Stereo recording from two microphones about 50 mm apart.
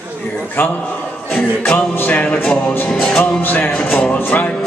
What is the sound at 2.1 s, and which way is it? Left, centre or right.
Music, left.